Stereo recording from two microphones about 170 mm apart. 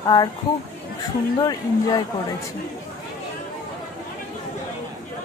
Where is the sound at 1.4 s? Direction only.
25° left (ahead or behind).